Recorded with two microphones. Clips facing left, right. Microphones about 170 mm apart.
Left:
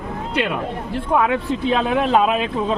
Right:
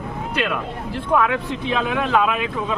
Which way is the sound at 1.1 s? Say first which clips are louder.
Left 1 dB; 30° left (ahead or behind).